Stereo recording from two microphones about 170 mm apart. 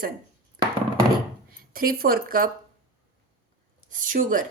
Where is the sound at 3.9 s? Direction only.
50° right (ahead or behind).